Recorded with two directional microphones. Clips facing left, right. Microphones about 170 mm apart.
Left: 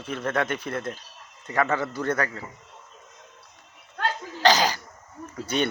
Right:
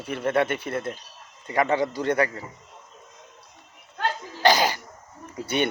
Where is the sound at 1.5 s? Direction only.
15° right (ahead or behind).